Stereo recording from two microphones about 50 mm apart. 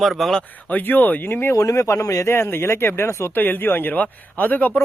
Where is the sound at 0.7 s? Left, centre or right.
Left.